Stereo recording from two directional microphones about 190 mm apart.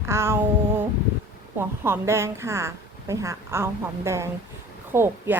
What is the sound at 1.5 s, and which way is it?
A woman's voice, 10° right (ahead or behind).